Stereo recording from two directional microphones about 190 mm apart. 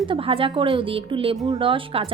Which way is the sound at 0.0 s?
30° right (ahead or behind).